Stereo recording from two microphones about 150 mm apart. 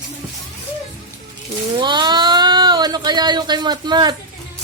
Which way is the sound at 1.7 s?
30° right (ahead or behind).